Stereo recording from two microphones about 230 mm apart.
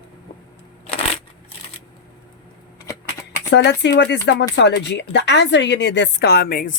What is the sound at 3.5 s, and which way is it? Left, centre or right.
A woman's voice, left.